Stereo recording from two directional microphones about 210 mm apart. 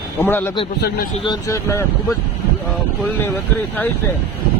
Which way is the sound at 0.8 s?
50° left (ahead or behind).